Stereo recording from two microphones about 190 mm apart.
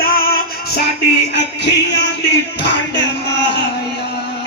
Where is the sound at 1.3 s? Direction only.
65° left (ahead or behind).